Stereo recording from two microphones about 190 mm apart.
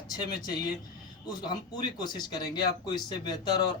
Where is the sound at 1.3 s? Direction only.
20° left (ahead or behind).